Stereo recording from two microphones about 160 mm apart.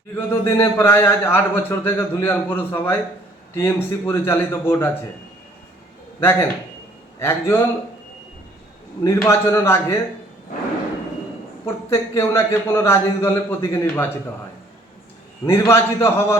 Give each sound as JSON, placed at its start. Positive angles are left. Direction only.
{"t": 0.3, "sound": "a man's voice", "side_deg": 15}
{"t": 6.1, "sound": "a man's voice", "side_deg": 15}
{"t": 9.2, "sound": "a man's voice", "side_deg": 15}
{"t": 11.6, "sound": "a man's voice", "side_deg": 15}
{"t": 15.4, "sound": "a man's voice", "side_deg": 15}